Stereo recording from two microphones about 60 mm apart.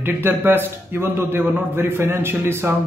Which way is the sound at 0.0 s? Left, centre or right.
Right.